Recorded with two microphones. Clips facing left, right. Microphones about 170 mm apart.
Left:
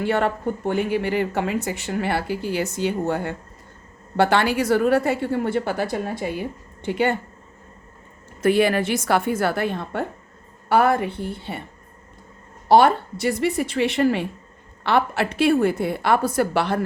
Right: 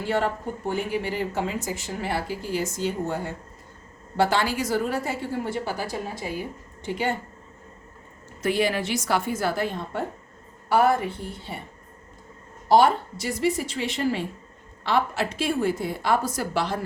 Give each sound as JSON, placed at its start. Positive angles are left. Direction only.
{"t": 0.0, "sound": "speech", "side_deg": 60}
{"t": 8.4, "sound": "speech", "side_deg": 55}
{"t": 12.6, "sound": "speech", "side_deg": 65}